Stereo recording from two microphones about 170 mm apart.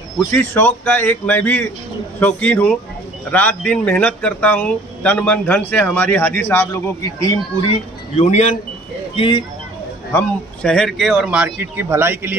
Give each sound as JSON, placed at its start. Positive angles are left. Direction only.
{"t": 0.3, "sound": "speech", "side_deg": 10}
{"t": 8.2, "sound": "speech", "side_deg": 45}
{"t": 9.1, "sound": "speech", "side_deg": 30}
{"t": 10.1, "sound": "speech", "side_deg": 5}